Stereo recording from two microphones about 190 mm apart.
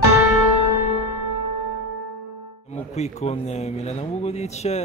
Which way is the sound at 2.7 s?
35° left (ahead or behind).